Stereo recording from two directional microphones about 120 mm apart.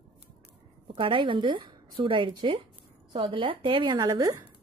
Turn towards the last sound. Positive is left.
turn(degrees=-30)  # may be behind; listen again after turning